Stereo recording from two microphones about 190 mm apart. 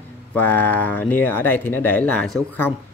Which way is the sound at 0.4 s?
10° left (ahead or behind).